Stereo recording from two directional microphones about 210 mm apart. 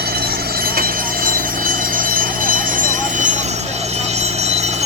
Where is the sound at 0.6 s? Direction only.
45° right (ahead or behind).